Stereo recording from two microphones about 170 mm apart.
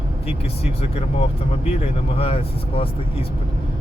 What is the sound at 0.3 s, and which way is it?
Speech, 35° left (ahead or behind).